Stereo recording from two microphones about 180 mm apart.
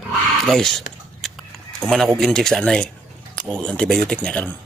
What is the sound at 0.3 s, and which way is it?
Speech, centre (ahead or behind).